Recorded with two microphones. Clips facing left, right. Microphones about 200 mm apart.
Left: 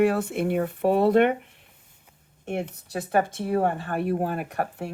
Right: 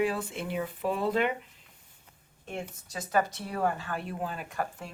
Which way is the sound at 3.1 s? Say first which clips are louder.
Left 4 dB; 55° left (ahead or behind).